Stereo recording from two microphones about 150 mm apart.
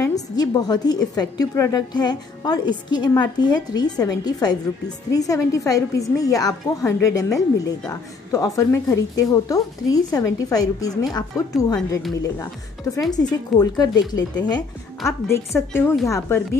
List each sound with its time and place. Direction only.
0.4 s a woman's voice: 25° left (ahead or behind)
13.1 s a woman's voice: 25° left (ahead or behind)